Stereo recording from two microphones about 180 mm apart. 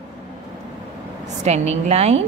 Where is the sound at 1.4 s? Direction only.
40° right (ahead or behind).